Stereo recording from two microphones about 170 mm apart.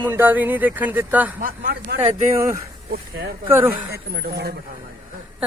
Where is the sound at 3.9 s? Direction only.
70° right (ahead or behind).